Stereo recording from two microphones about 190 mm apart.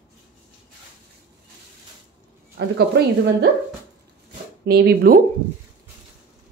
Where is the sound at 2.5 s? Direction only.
60° right (ahead or behind).